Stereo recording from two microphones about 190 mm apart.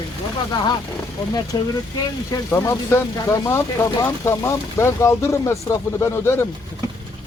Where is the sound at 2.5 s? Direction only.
15° left (ahead or behind).